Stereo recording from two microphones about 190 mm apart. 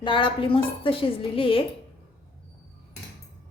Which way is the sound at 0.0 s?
25° left (ahead or behind).